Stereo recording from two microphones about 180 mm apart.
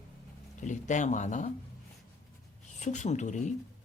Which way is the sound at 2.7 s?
40° left (ahead or behind).